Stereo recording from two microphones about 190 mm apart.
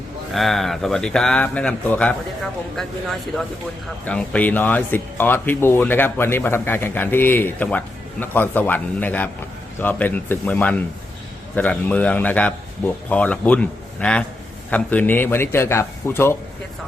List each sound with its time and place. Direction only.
0.3 s speech: centre (ahead or behind)